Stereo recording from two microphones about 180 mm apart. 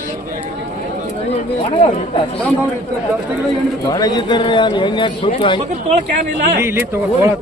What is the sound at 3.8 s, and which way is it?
A man's voice, 20° left (ahead or behind).